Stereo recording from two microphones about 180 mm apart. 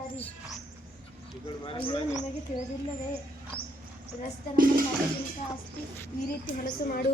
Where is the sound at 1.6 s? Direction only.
30° left (ahead or behind).